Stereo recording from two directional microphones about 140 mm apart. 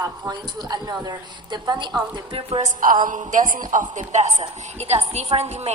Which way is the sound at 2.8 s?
70° right (ahead or behind).